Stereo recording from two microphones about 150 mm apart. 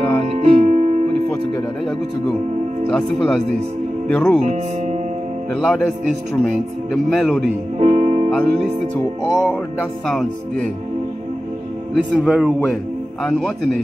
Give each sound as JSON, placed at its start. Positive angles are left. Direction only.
{"t": 0.2, "sound": "music", "side_deg": -45}
{"t": 2.9, "sound": "speech", "side_deg": 5}
{"t": 4.4, "sound": "speech", "side_deg": -50}
{"t": 5.5, "sound": "speech", "side_deg": 5}
{"t": 7.8, "sound": "music", "side_deg": -50}
{"t": 8.3, "sound": "speech", "side_deg": 5}
{"t": 10.0, "sound": "speech", "side_deg": 5}
{"t": 11.9, "sound": "speech", "side_deg": 0}